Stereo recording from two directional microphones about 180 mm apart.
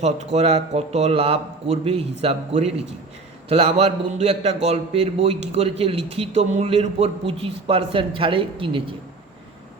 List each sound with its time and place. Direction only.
0.0 s a man's voice: 40° right (ahead or behind)